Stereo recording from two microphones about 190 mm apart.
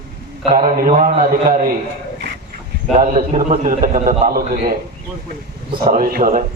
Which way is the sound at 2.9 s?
45° right (ahead or behind).